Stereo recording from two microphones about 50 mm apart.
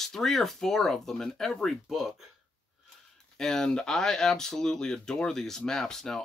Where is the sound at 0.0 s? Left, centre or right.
Centre.